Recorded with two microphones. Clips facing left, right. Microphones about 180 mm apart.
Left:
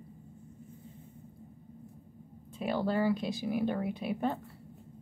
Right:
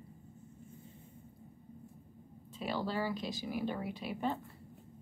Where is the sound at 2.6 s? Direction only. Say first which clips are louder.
Left 6 dB; 55° left (ahead or behind).